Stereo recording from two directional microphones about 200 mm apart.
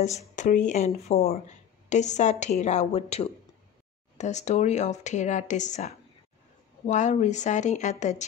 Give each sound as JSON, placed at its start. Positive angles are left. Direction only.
{"t": 0.4, "sound": "a woman's voice", "side_deg": 40}